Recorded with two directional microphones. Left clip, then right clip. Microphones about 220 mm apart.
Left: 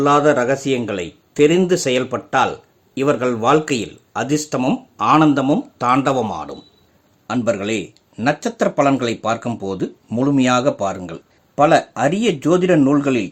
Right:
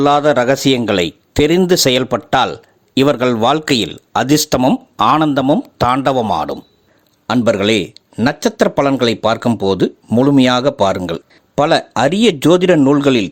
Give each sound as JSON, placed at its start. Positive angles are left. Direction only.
{"t": 0.0, "sound": "speech", "side_deg": -40}